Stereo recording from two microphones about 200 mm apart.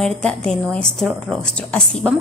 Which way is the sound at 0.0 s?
5° left (ahead or behind).